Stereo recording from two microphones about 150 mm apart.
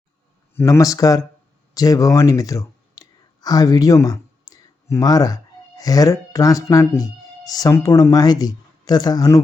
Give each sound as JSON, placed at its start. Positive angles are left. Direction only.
{"t": 0.5, "sound": "speech", "side_deg": 20}